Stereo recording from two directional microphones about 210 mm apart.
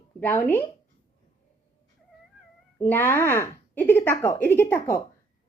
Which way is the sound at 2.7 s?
10° left (ahead or behind).